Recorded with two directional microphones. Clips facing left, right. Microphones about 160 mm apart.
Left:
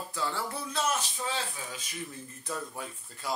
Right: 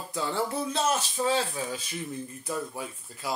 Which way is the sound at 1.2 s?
35° right (ahead or behind).